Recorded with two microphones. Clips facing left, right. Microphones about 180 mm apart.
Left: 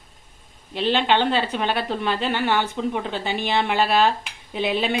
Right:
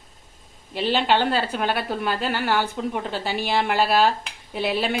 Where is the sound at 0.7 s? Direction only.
5° right (ahead or behind).